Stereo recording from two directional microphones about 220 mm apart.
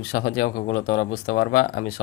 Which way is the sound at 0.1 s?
45° left (ahead or behind).